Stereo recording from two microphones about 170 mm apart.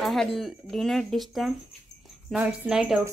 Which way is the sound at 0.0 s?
Centre (ahead or behind).